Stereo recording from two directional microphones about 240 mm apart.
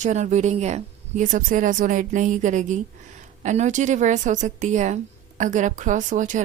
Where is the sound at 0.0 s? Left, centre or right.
Right.